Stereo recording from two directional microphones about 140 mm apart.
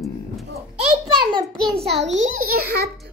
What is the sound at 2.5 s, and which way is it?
Speech, 90° right.